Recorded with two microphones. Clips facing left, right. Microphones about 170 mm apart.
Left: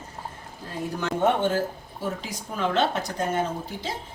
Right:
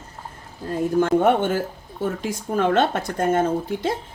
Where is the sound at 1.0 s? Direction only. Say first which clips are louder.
Right 5 dB; 50° right (ahead or behind).